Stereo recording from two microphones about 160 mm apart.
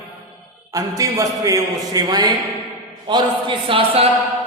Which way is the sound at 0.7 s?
20° right (ahead or behind).